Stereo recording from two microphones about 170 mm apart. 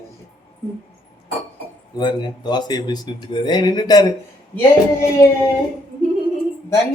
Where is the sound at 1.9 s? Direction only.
25° left (ahead or behind).